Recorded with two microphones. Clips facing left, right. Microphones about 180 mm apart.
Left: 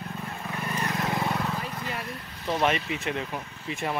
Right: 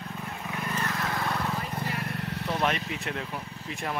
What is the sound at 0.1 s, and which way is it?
Vehicle, centre (ahead or behind).